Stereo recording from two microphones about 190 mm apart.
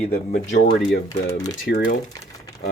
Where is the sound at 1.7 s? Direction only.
55° left (ahead or behind).